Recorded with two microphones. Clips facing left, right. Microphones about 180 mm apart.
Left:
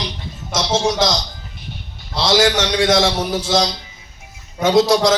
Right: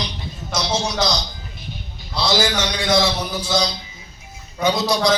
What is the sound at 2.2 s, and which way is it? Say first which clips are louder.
A man's voice: left 5 dB; 90° left.